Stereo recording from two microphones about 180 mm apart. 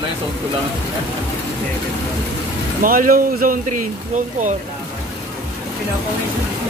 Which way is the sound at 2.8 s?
50° right (ahead or behind).